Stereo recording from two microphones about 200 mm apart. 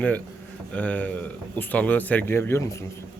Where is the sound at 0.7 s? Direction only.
5° left (ahead or behind).